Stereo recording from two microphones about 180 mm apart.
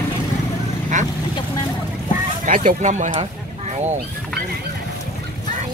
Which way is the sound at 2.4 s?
50° right (ahead or behind).